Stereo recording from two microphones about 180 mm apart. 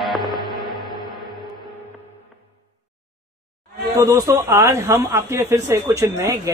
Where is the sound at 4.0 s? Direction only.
15° right (ahead or behind).